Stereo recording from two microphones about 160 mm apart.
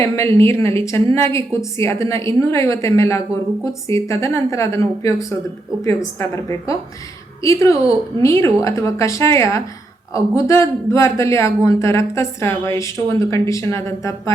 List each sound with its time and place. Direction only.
0.3 s a woman's voice: 15° left (ahead or behind)
7.4 s a woman's voice: 20° left (ahead or behind)